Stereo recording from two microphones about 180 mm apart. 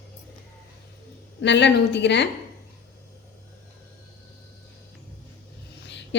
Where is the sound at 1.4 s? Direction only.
75° left (ahead or behind).